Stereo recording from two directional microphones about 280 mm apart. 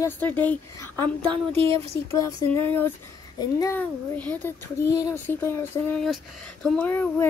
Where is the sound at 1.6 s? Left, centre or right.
Centre.